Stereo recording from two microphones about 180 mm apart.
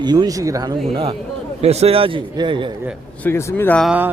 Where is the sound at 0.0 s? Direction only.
25° right (ahead or behind).